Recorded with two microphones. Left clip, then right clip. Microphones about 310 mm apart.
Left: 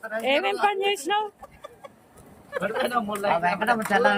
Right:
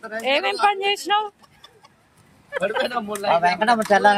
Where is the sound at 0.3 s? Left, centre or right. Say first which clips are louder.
Right 4 dB; centre.